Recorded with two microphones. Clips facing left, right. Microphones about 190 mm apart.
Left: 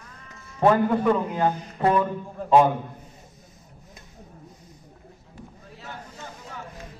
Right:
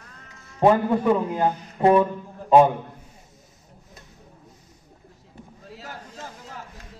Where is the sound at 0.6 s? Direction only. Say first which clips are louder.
Right 1 dB; 15° right (ahead or behind).